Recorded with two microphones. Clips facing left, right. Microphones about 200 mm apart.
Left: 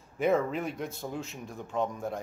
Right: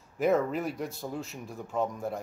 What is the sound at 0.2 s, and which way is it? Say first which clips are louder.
Speech: right 1 dB; centre (ahead or behind).